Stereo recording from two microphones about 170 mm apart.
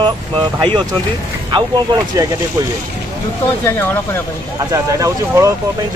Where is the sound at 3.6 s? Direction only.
10° left (ahead or behind).